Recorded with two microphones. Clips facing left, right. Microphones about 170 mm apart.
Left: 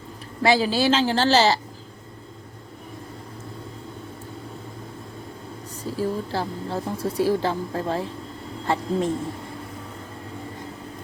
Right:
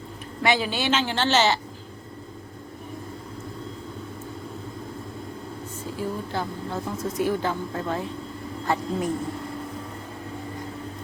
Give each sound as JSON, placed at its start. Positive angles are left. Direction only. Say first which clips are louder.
{"t": 0.4, "sound": "a woman's voice", "louder": "left 4 dB", "side_deg": 35}
{"t": 5.8, "sound": "a woman's voice", "louder": "left 5 dB", "side_deg": 35}